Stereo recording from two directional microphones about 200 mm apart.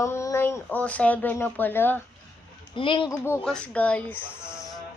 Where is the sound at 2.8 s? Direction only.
25° left (ahead or behind).